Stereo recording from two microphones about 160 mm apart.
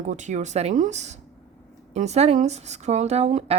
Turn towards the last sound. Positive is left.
turn(degrees=-45)  # may be behind; listen again after turning